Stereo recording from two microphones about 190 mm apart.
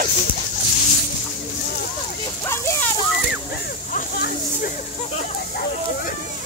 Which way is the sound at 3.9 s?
45° left (ahead or behind).